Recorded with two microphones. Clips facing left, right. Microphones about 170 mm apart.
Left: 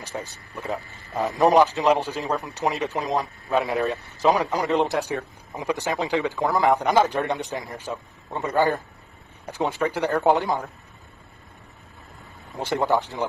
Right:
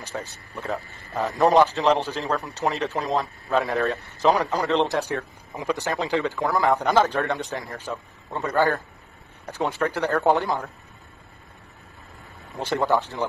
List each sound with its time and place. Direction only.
0.0 s speech: 15° left (ahead or behind)
4.3 s speech: 15° left (ahead or behind)
12.5 s speech: 15° left (ahead or behind)